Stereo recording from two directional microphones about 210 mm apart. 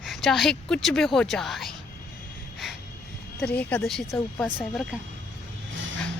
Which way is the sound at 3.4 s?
5° left (ahead or behind).